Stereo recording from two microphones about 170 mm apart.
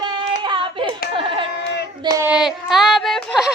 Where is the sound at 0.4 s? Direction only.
30° right (ahead or behind).